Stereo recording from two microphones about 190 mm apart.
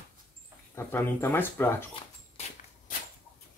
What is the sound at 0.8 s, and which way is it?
Speech, 10° left (ahead or behind).